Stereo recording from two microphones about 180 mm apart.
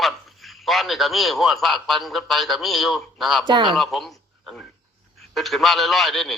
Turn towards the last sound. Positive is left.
turn(degrees=0)  # may be behind; listen again after turning